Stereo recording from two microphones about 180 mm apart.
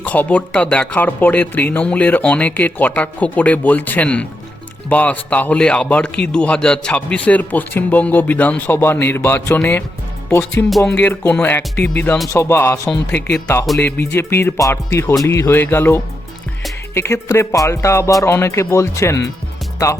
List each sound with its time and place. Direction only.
0.0 s speech: 10° left (ahead or behind)